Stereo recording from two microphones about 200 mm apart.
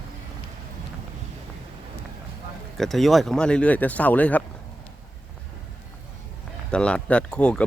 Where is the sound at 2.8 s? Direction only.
Centre (ahead or behind).